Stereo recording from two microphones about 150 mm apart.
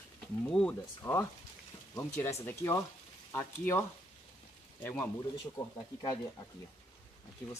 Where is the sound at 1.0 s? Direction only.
20° left (ahead or behind).